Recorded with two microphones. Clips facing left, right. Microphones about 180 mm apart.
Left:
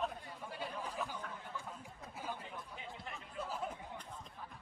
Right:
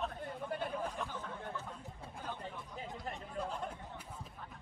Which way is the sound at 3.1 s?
35° right (ahead or behind).